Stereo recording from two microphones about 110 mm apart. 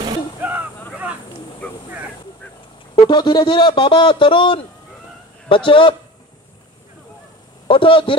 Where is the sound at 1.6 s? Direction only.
15° left (ahead or behind).